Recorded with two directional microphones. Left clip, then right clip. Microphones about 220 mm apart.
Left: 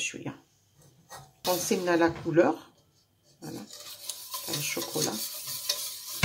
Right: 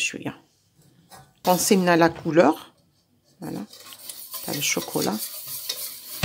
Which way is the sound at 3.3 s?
35° right (ahead or behind).